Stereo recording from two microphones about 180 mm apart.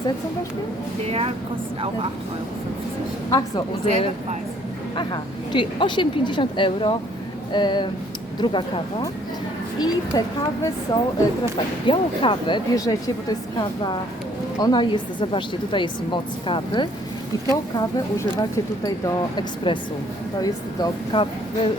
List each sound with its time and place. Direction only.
1.0 s a woman's voice: 35° right (ahead or behind)
3.2 s speech: 20° left (ahead or behind)
4.9 s speech: 25° left (ahead or behind)